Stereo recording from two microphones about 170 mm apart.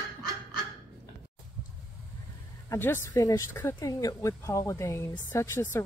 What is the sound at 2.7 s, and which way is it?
A woman's voice, 15° left (ahead or behind).